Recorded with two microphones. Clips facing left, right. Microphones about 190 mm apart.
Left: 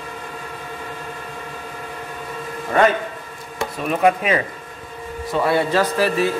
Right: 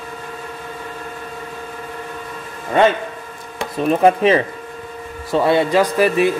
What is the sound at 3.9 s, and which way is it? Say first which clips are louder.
A man's voice: right 4 dB; 30° right (ahead or behind).